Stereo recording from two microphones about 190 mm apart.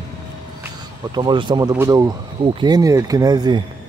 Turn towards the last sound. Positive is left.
turn(degrees=-20)  # may be behind; listen again after turning